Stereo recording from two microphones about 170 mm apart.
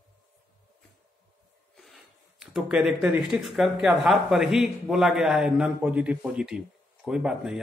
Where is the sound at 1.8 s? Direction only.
Centre (ahead or behind).